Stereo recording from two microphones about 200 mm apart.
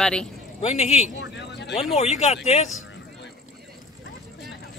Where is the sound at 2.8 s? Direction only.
60° left (ahead or behind).